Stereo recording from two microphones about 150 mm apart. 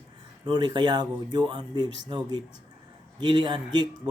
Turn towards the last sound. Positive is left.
turn(degrees=-30)  # may be behind; listen again after turning